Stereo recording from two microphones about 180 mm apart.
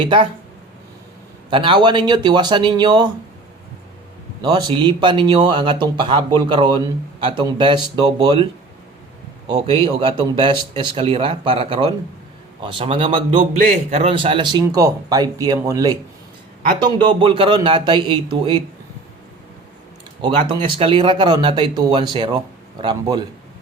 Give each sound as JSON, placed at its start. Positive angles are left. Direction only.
{"t": 0.0, "sound": "a man's voice", "side_deg": -30}
{"t": 1.5, "sound": "a man's voice", "side_deg": -25}
{"t": 4.4, "sound": "a man's voice", "side_deg": -25}
{"t": 9.6, "sound": "a man's voice", "side_deg": -30}
{"t": 13.4, "sound": "a man's voice", "side_deg": -40}
{"t": 20.7, "sound": "a man's voice", "side_deg": -30}